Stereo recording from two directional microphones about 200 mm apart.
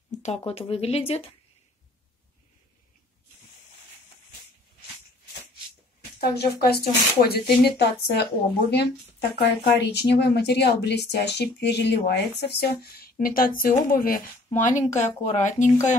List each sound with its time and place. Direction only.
0.5 s speech: 30° left (ahead or behind)
6.2 s a woman's voice: 55° left (ahead or behind); by 16.0 s 35° left (ahead or behind)